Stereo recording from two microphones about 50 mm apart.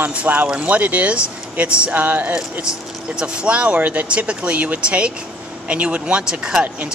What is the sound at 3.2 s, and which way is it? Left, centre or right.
Speech, centre.